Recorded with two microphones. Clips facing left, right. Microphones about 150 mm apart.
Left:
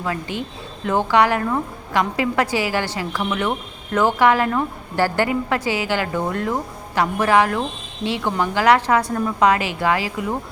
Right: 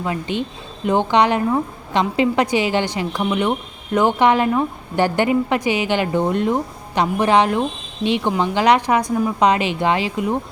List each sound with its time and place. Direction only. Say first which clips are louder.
0.0 s a woman's voice: right 3 dB; 20° right (ahead or behind)